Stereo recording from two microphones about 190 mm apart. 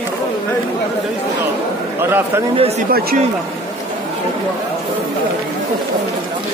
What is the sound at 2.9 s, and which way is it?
Speech, 55° right (ahead or behind).